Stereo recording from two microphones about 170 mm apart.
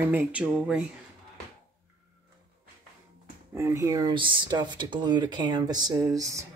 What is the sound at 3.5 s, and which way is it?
Speech, 15° right (ahead or behind).